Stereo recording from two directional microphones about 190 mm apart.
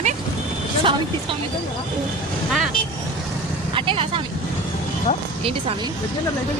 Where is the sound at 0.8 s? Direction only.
25° right (ahead or behind).